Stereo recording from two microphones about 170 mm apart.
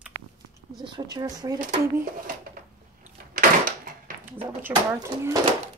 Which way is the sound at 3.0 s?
55° right (ahead or behind).